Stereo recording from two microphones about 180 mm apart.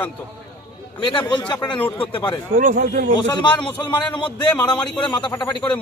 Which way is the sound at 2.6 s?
45° right (ahead or behind).